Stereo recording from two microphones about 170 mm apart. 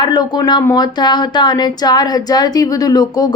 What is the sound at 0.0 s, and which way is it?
A woman's voice, 25° left (ahead or behind).